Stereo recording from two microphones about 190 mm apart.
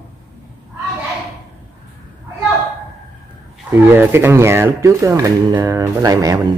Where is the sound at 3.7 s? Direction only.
10° right (ahead or behind).